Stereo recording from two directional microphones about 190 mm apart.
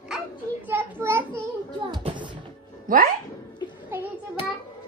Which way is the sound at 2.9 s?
45° right (ahead or behind).